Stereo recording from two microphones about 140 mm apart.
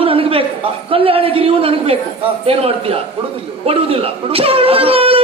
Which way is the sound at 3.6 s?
45° right (ahead or behind).